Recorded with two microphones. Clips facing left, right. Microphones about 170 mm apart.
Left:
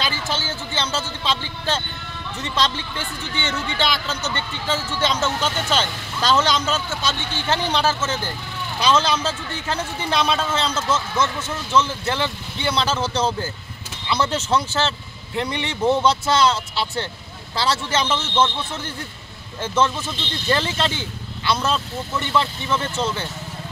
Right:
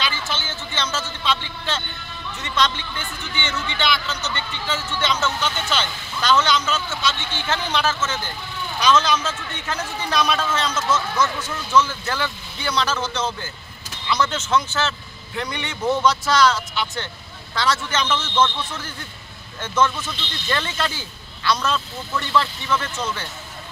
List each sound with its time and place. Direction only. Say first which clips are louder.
0.0 s speech: left 2 dB; 35° left (ahead or behind)